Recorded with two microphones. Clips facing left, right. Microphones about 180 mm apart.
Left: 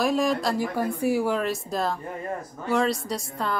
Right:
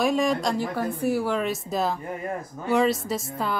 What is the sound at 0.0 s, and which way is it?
A woman's voice, centre (ahead or behind).